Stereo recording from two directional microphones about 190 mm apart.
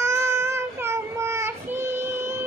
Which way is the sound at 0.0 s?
15° right (ahead or behind).